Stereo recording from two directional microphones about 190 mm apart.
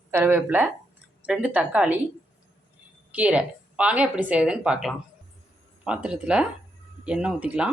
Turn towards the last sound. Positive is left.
turn(degrees=-5)  # may be behind; listen again after turning